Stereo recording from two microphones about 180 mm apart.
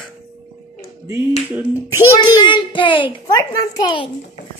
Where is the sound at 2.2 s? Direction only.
25° left (ahead or behind).